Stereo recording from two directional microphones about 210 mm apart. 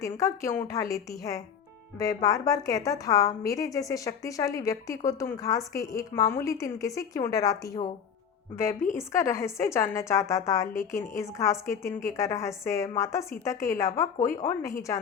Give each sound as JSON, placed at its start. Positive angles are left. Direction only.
{"t": 0.0, "sound": "a woman's voice", "side_deg": 15}
{"t": 9.1, "sound": "a woman's voice", "side_deg": 15}